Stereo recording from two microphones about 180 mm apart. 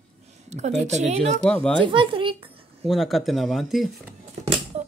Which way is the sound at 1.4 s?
5° left (ahead or behind).